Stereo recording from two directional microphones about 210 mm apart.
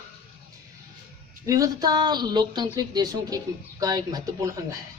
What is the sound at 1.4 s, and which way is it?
A woman's voice, 15° right (ahead or behind).